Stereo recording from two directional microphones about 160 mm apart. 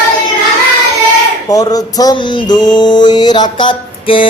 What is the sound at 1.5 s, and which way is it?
Mantra, 25° left (ahead or behind).